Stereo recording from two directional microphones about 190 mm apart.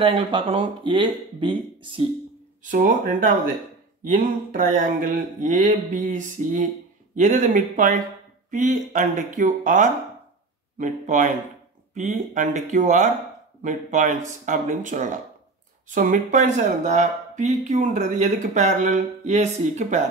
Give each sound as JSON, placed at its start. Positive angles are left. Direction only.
{"t": 0.0, "sound": "speech", "side_deg": -30}
{"t": 2.6, "sound": "a sound", "side_deg": -45}
{"t": 8.5, "sound": "speech", "side_deg": -40}